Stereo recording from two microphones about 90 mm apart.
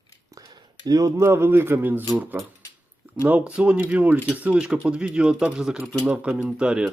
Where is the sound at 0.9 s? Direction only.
40° right (ahead or behind).